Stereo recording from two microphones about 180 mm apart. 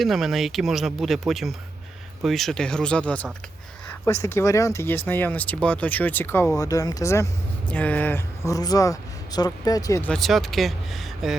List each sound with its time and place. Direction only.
0.0 s speech: centre (ahead or behind); by 10.1 s 20° left (ahead or behind)
10.1 s speech: centre (ahead or behind)